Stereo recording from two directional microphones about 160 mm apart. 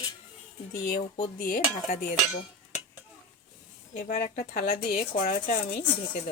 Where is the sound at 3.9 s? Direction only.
50° left (ahead or behind).